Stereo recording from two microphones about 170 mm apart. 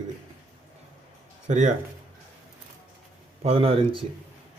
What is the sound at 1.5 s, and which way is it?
Speech, 45° right (ahead or behind).